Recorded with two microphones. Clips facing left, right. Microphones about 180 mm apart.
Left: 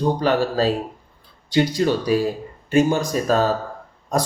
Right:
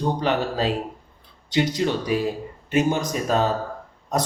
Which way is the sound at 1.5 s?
20° right (ahead or behind).